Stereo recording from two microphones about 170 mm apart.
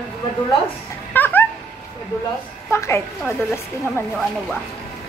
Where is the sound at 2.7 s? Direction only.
15° left (ahead or behind).